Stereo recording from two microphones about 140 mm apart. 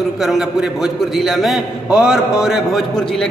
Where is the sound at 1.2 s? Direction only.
Centre (ahead or behind).